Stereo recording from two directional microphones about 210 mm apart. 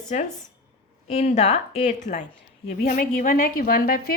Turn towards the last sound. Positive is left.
turn(degrees=45)  # may be behind; listen again after turning